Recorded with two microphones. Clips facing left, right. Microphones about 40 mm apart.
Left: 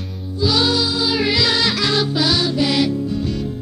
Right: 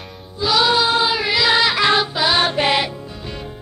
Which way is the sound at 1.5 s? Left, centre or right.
Right.